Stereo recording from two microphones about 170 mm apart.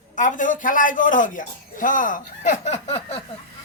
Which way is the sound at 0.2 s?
50° left (ahead or behind).